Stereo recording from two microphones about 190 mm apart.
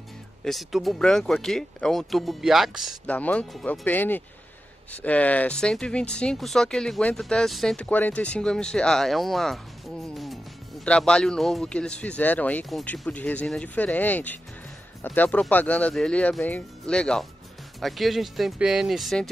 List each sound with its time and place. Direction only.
0.4 s speech: centre (ahead or behind)